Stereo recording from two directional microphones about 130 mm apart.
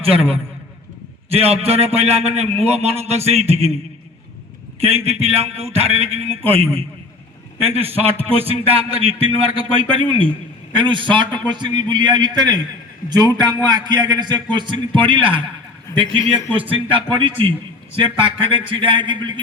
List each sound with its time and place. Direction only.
0.0 s a man's voice: 45° right (ahead or behind)
4.8 s a man's voice: 50° right (ahead or behind)
16.5 s a man's voice: 45° right (ahead or behind)